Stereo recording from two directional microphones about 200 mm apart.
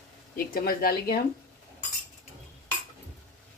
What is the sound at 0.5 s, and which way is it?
Speech, 50° left (ahead or behind).